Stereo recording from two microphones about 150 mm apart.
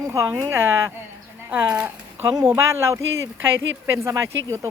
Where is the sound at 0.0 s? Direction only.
20° right (ahead or behind).